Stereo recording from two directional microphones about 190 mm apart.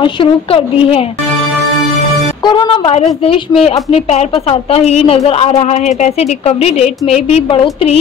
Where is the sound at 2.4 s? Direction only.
25° left (ahead or behind).